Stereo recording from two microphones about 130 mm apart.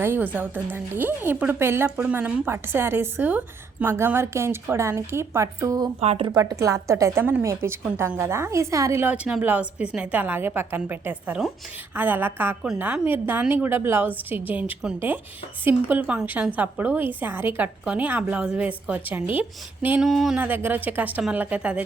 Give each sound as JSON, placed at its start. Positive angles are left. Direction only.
{"t": 0.0, "sound": "a woman's voice", "side_deg": -15}
{"t": 6.0, "sound": "speech", "side_deg": -50}
{"t": 6.3, "sound": "a woman's voice", "side_deg": -25}
{"t": 20.4, "sound": "a woman's voice", "side_deg": -15}